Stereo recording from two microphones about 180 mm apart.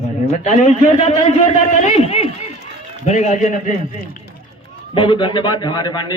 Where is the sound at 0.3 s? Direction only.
40° left (ahead or behind).